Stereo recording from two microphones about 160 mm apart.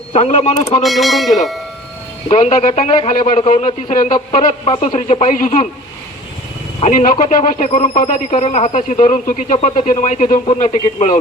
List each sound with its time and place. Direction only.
0.1 s speech: 40° left (ahead or behind)
0.8 s speech: centre (ahead or behind)
2.3 s speech: 45° left (ahead or behind)
4.3 s speech: 35° left (ahead or behind); by 5.6 s 50° left (ahead or behind)
6.7 s speech: 50° left (ahead or behind)